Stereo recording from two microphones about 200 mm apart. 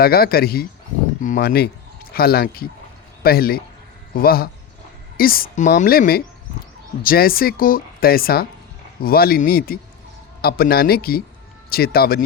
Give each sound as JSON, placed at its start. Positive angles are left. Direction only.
{"t": 0.0, "sound": "speech", "side_deg": 50}